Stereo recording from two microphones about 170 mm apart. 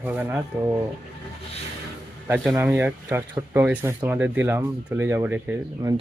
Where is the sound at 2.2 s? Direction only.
10° right (ahead or behind).